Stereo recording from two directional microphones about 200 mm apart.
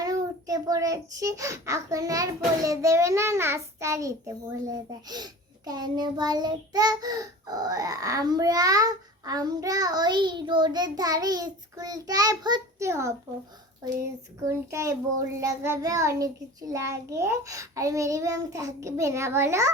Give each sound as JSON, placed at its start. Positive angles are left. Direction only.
{"t": 0.0, "sound": "a child's voice", "side_deg": -20}
{"t": 14.5, "sound": "a child's voice", "side_deg": -15}